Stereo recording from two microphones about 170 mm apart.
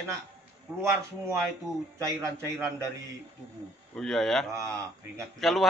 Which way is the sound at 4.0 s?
Centre (ahead or behind).